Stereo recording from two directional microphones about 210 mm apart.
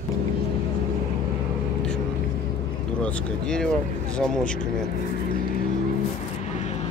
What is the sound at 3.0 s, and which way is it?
Speech, 5° left (ahead or behind).